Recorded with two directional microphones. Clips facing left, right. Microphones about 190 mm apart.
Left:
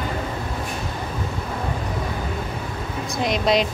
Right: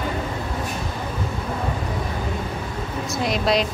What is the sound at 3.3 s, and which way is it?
Speech, centre (ahead or behind).